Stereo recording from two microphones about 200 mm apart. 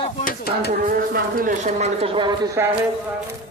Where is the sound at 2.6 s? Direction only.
15° right (ahead or behind).